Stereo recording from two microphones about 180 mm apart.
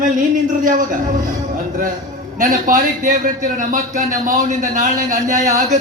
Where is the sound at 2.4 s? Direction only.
45° right (ahead or behind).